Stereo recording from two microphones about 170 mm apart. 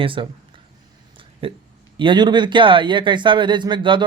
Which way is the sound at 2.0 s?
25° right (ahead or behind).